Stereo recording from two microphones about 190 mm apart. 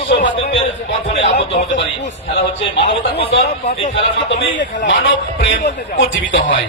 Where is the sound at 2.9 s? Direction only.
30° left (ahead or behind).